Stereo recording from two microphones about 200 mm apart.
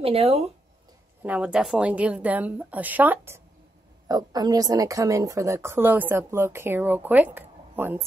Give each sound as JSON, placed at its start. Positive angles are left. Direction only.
{"t": 0.0, "sound": "speech", "side_deg": -30}
{"t": 1.2, "sound": "speech", "side_deg": -5}